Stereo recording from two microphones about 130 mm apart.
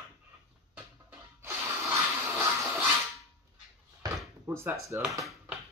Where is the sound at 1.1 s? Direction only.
20° right (ahead or behind).